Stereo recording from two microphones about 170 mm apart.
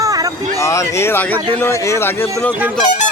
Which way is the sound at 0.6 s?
15° left (ahead or behind).